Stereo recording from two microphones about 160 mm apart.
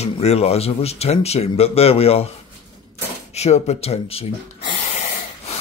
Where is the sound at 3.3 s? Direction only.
45° left (ahead or behind).